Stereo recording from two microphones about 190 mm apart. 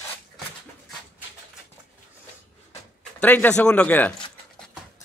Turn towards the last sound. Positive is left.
turn(degrees=10)  # may be behind; listen again after turning